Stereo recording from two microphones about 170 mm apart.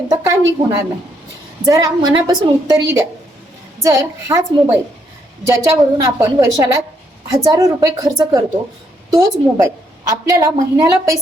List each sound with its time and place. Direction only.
0.1 s a woman's voice: 15° right (ahead or behind)
3.8 s a woman's voice: 15° right (ahead or behind)